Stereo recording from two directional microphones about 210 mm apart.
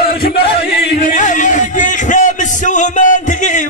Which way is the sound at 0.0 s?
50° left (ahead or behind).